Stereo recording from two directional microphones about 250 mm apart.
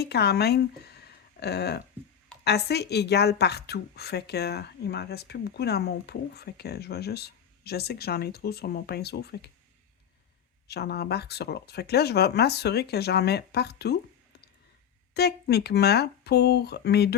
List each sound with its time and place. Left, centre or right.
0.0 s a woman's voice: left
10.7 s a woman's voice: left
15.1 s a woman's voice: left